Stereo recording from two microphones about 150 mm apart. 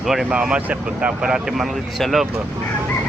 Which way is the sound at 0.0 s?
Centre (ahead or behind).